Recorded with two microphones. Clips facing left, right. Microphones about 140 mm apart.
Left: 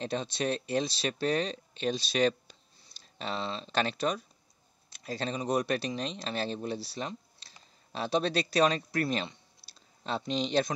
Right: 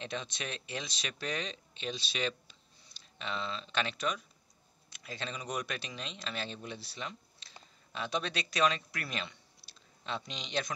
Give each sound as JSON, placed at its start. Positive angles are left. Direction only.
{"t": 0.0, "sound": "speech", "side_deg": 35}